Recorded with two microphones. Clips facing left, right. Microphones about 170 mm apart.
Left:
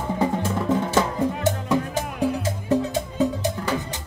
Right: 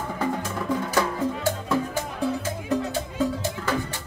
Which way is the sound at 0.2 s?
25° left (ahead or behind).